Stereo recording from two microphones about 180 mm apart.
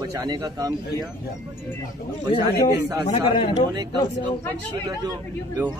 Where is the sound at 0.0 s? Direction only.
20° right (ahead or behind).